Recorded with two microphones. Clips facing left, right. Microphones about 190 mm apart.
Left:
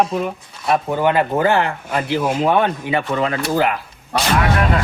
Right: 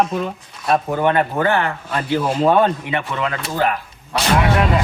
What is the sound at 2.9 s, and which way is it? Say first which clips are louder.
Speech: left 3 dB; 35° left (ahead or behind).